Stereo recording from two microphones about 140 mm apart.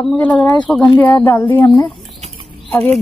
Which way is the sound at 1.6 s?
30° left (ahead or behind).